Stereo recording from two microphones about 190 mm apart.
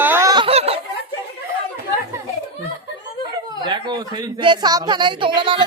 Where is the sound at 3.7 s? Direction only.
20° right (ahead or behind).